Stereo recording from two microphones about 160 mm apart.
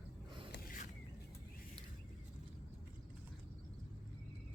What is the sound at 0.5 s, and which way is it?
Mechanisms, 65° left (ahead or behind).